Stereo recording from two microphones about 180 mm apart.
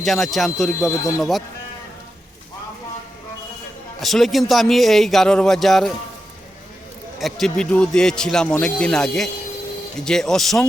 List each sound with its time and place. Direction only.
0.0 s speech: centre (ahead or behind)
0.7 s speech: 15° left (ahead or behind)
1.2 s speech: centre (ahead or behind)
4.0 s speech: centre (ahead or behind)
7.2 s speech: centre (ahead or behind)